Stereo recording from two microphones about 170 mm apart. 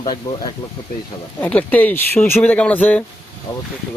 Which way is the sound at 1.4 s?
10° left (ahead or behind).